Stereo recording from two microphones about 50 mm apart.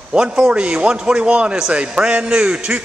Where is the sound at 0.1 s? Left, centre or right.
Centre.